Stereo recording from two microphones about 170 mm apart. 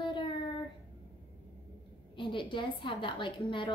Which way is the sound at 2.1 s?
30° left (ahead or behind).